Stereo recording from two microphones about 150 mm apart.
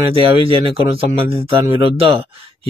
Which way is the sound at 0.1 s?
40° right (ahead or behind).